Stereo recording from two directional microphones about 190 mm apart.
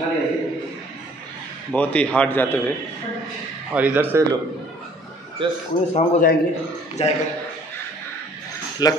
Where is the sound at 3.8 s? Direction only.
10° right (ahead or behind).